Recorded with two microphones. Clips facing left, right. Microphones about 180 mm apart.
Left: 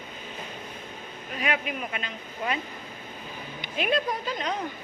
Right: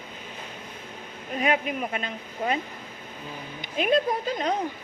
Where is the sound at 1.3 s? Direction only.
40° right (ahead or behind).